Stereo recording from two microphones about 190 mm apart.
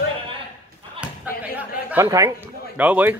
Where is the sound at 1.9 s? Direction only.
15° right (ahead or behind).